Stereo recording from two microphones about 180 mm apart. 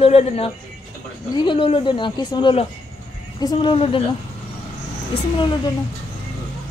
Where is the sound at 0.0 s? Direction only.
35° left (ahead or behind).